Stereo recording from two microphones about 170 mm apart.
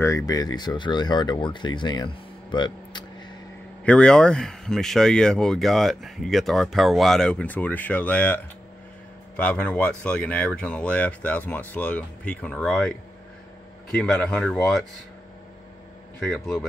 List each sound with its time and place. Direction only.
0.0 s speech: 20° left (ahead or behind)
3.8 s speech: 5° left (ahead or behind)
9.4 s speech: 10° left (ahead or behind)
13.9 s speech: 5° left (ahead or behind)
16.2 s speech: 5° left (ahead or behind)